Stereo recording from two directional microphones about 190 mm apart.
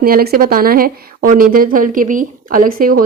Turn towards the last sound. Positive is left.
turn(degrees=-50)  # may be behind; listen again after turning